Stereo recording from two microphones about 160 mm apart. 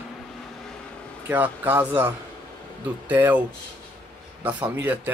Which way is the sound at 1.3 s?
10° right (ahead or behind).